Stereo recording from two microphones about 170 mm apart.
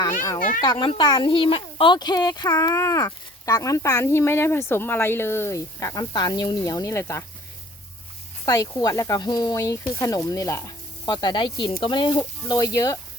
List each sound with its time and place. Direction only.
0.6 s speech: 30° left (ahead or behind)
8.4 s speech: 20° left (ahead or behind)